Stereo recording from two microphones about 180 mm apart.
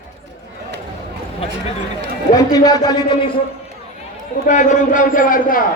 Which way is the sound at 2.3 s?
20° left (ahead or behind).